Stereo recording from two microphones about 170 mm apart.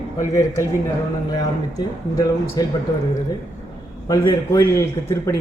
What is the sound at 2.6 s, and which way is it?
Speech, 20° left (ahead or behind).